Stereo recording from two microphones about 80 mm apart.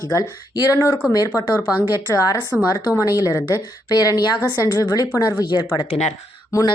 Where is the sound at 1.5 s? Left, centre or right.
Right.